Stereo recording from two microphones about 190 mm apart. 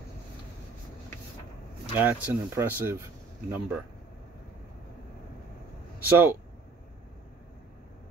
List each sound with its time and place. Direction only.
2.0 s speech: 10° right (ahead or behind)
6.0 s speech: 10° right (ahead or behind)